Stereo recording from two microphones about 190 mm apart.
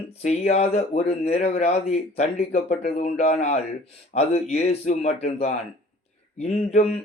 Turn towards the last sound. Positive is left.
turn(degrees=35)  # may be behind; listen again after turning